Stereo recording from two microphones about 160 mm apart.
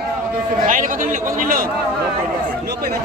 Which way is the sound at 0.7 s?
55° right (ahead or behind).